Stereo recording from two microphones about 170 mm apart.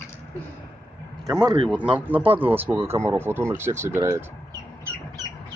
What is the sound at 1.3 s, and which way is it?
Speech, 25° right (ahead or behind).